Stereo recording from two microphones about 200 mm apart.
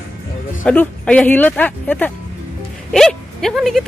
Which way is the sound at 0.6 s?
5° left (ahead or behind).